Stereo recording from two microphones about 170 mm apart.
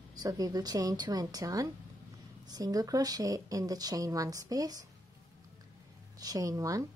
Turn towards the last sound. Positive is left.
turn(degrees=-20)  # may be behind; listen again after turning